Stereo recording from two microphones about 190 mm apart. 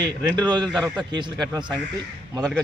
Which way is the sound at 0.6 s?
Centre (ahead or behind).